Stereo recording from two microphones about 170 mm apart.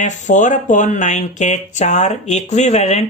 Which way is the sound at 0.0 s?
45° left (ahead or behind).